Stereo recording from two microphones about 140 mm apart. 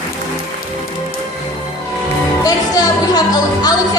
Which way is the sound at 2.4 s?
30° left (ahead or behind).